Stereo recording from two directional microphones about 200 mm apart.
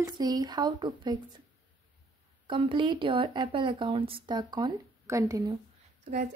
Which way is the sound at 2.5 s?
25° right (ahead or behind).